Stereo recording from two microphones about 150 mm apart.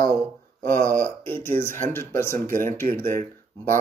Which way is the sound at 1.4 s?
15° left (ahead or behind).